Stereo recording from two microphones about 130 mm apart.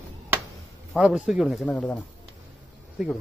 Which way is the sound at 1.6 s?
10° left (ahead or behind).